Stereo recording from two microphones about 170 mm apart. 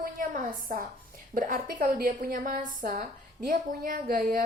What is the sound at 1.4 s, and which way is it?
A woman's voice, 55° right (ahead or behind).